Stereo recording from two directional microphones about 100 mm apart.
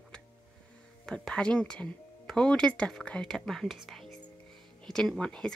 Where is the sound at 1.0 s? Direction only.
5° left (ahead or behind).